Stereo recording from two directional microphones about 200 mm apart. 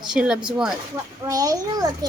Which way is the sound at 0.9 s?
15° right (ahead or behind).